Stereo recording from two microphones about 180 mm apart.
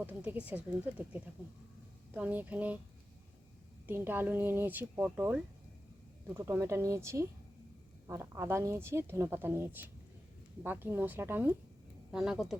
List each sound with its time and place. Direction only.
0.0 s speech: 10° right (ahead or behind)
3.8 s speech: 10° right (ahead or behind)